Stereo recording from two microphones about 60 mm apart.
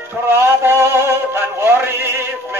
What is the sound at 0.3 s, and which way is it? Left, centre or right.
Music, right.